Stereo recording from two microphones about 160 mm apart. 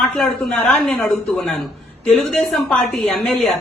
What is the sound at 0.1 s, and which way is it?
Speech, 5° left (ahead or behind).